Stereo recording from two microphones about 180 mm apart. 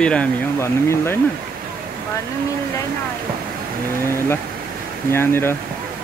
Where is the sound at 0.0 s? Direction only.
5° left (ahead or behind).